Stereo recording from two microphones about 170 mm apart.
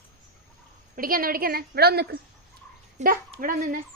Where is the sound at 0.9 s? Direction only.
55° right (ahead or behind).